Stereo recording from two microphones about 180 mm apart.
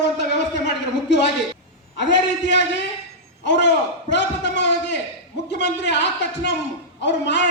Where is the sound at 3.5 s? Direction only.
75° left (ahead or behind).